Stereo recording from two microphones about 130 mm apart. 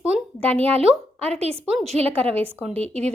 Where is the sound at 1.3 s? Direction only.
50° right (ahead or behind).